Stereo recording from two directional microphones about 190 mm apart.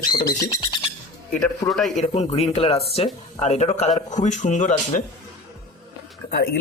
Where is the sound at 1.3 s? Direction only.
5° left (ahead or behind).